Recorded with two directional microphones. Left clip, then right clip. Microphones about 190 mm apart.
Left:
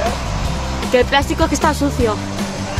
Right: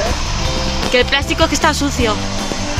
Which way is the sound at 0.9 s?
15° left (ahead or behind).